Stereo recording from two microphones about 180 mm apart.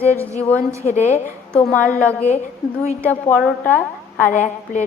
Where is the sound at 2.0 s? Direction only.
10° left (ahead or behind).